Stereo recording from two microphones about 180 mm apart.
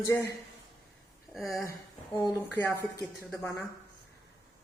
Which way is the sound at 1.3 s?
Centre (ahead or behind).